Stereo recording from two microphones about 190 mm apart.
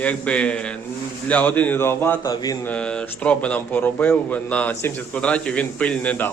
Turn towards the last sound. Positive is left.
turn(degrees=5)  # may be behind; listen again after turning